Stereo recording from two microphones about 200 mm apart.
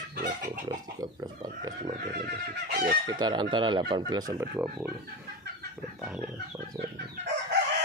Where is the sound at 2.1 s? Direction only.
55° right (ahead or behind).